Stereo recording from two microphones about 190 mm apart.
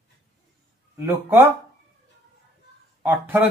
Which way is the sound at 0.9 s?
15° right (ahead or behind).